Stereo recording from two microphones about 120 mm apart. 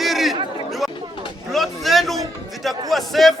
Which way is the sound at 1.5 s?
Centre (ahead or behind).